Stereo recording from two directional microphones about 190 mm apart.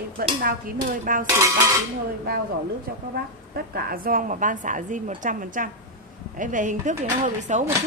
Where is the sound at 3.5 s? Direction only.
55° right (ahead or behind); by 7.7 s 35° right (ahead or behind).